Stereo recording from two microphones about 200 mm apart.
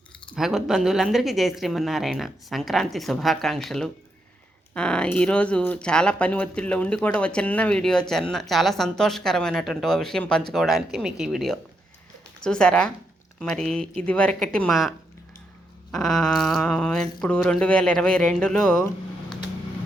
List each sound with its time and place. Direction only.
0.3 s speech: centre (ahead or behind)